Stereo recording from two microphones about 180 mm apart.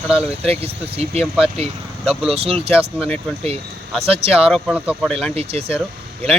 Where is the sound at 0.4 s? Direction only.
35° right (ahead or behind).